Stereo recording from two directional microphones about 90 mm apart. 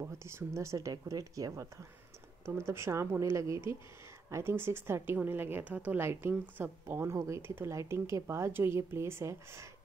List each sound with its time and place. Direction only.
0.0 s a woman's voice: 30° right (ahead or behind)